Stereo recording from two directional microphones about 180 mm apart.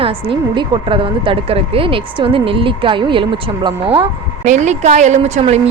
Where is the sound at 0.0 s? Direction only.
30° right (ahead or behind).